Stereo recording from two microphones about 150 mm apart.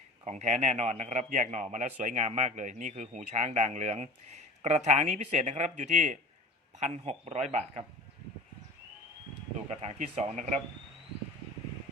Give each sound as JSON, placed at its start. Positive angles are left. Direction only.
{"t": 0.3, "sound": "speech", "side_deg": -50}
{"t": 9.6, "sound": "speech", "side_deg": -50}